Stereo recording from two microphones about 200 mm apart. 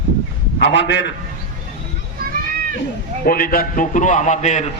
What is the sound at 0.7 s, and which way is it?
Speech, 65° left (ahead or behind).